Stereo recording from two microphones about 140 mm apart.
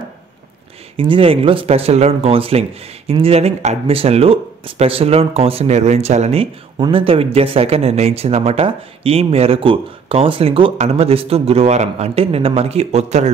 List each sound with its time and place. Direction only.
0.9 s speech: 40° right (ahead or behind)